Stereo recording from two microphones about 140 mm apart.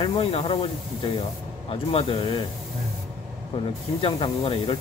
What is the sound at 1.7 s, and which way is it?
Speech, 40° left (ahead or behind).